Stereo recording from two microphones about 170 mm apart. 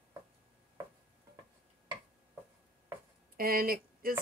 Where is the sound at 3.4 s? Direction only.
60° right (ahead or behind).